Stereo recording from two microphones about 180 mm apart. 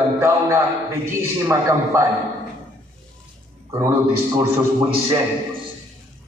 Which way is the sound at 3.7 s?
15° right (ahead or behind).